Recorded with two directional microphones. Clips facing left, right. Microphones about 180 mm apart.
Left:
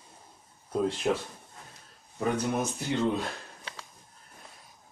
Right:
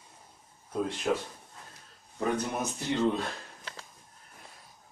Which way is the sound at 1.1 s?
25° left (ahead or behind).